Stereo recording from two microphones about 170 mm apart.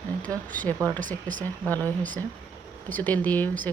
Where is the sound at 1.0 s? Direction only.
50° right (ahead or behind).